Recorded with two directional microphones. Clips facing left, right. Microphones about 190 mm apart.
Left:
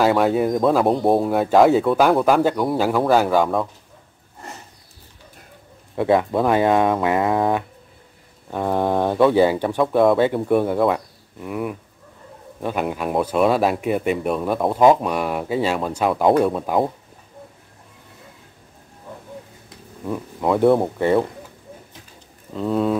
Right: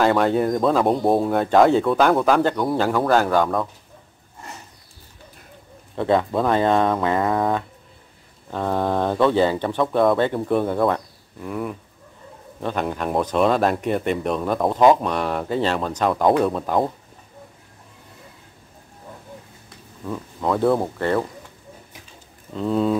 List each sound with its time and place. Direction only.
0.0 s speech: 5° left (ahead or behind)
5.9 s speech: 10° left (ahead or behind)
20.1 s speech: 15° left (ahead or behind)
22.6 s speech: centre (ahead or behind)